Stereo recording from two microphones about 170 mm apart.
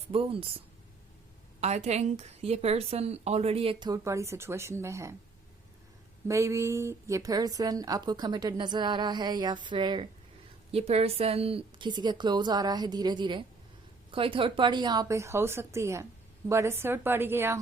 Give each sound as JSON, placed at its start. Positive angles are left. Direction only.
{"t": 0.1, "sound": "a woman's voice", "side_deg": -35}
{"t": 1.6, "sound": "a woman's voice", "side_deg": -40}
{"t": 6.2, "sound": "a woman's voice", "side_deg": -15}